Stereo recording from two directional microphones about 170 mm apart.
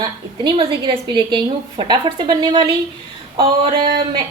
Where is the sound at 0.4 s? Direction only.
30° right (ahead or behind).